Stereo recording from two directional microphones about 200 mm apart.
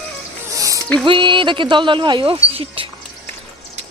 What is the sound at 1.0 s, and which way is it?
Speech, 25° right (ahead or behind).